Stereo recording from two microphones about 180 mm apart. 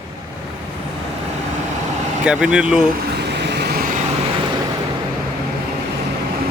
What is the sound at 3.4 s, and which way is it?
Vehicle, 70° right (ahead or behind).